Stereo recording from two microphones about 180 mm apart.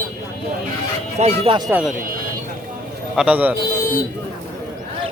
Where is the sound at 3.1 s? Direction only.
5° right (ahead or behind).